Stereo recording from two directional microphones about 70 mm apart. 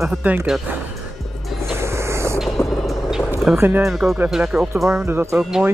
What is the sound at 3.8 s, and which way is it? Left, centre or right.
Speech, centre.